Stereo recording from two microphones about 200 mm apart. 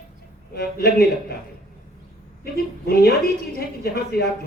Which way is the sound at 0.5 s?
50° left (ahead or behind).